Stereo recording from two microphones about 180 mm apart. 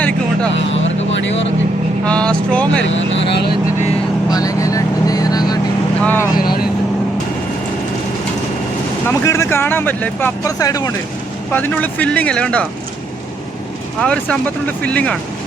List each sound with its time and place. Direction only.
0.5 s vehicle: 90° left
2.0 s speech: 5° left (ahead or behind)
2.8 s speech: 90° left
4.3 s vehicle: 20° left (ahead or behind)
6.0 s vehicle: 10° left (ahead or behind)
9.0 s speech: 15° left (ahead or behind)
14.0 s speech: 5° left (ahead or behind)